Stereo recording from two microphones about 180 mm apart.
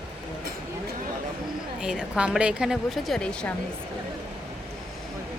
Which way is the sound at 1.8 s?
5° right (ahead or behind).